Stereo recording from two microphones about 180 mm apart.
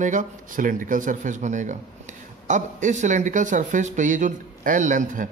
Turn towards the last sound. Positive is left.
turn(degrees=-45)  # may be behind; listen again after turning